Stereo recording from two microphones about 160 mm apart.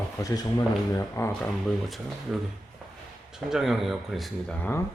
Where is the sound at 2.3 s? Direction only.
5° right (ahead or behind).